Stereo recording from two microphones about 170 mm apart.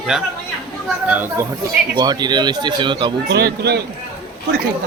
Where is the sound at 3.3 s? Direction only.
75° right (ahead or behind).